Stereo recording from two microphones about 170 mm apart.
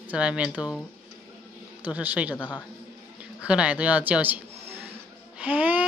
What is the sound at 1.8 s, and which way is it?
Speech, 10° right (ahead or behind).